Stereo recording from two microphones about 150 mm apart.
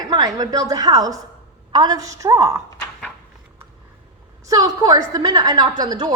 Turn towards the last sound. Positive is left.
turn(degrees=-30)  # may be behind; listen again after turning